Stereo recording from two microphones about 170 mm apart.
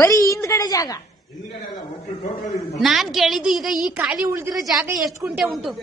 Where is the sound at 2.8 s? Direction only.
Centre (ahead or behind).